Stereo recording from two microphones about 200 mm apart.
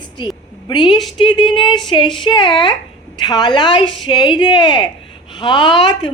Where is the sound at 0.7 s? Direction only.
20° left (ahead or behind).